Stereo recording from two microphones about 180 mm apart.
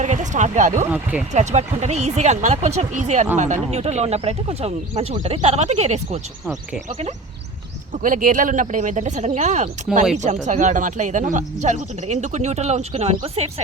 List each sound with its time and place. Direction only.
0.0 s a sound: 40° right (ahead or behind)
0.9 s speech: 10° right (ahead or behind)
1.3 s speech: 40° right (ahead or behind)
8.0 s speech: 50° right (ahead or behind)